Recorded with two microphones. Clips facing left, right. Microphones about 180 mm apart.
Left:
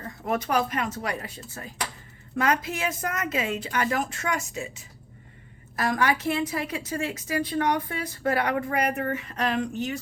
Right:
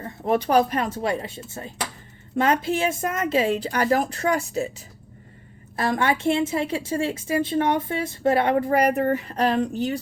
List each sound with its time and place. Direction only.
0.0 s a woman's voice: 30° right (ahead or behind)
5.7 s a woman's voice: 25° right (ahead or behind)